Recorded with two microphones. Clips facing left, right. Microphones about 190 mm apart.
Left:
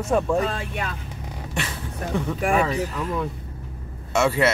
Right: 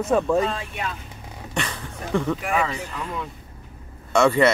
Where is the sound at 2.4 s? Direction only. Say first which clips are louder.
Left 4 dB; 45° left (ahead or behind).